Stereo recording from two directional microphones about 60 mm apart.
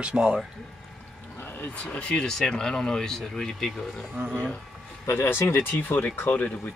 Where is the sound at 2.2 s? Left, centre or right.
Centre.